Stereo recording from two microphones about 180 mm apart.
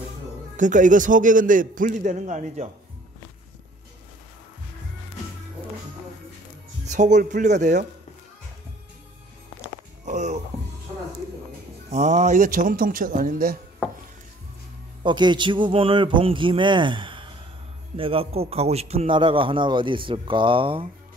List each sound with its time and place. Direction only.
0.6 s a man's voice: 45° right (ahead or behind)
6.9 s a man's voice: 40° right (ahead or behind)
10.0 s music: 40° right (ahead or behind)
11.9 s a man's voice: 40° right (ahead or behind)
15.0 s a man's voice: 25° right (ahead or behind)